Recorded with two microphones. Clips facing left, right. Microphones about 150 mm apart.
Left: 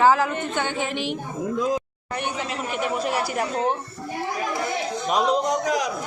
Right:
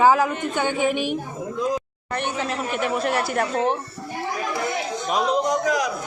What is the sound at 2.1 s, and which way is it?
Speech, 10° left (ahead or behind).